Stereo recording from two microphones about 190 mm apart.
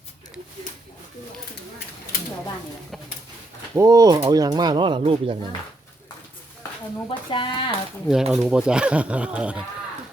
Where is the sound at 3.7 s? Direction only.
15° right (ahead or behind).